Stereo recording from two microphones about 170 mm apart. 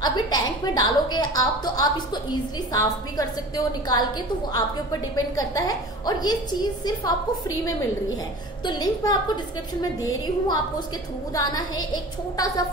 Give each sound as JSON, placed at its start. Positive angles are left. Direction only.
{"t": 0.0, "sound": "a woman's voice", "side_deg": 25}
{"t": 5.1, "sound": "a woman's voice", "side_deg": 20}